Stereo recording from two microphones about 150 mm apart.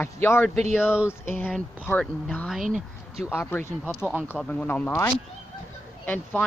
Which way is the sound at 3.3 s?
10° left (ahead or behind).